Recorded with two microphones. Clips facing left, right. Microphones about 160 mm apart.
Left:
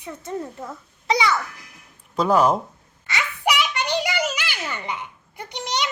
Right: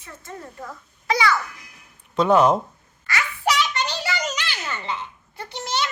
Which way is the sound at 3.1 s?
15° left (ahead or behind).